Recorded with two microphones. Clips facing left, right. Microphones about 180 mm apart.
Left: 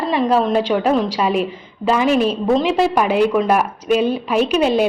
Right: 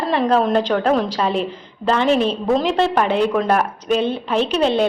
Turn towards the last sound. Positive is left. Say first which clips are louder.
# left 2 dB
turn(degrees=5)  # may be behind; listen again after turning